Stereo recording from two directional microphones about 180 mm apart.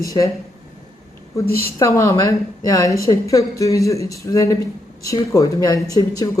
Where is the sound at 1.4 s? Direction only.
15° left (ahead or behind).